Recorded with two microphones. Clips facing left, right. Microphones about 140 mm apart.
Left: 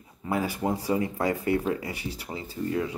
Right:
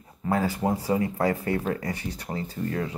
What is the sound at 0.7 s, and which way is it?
Speech, 35° right (ahead or behind).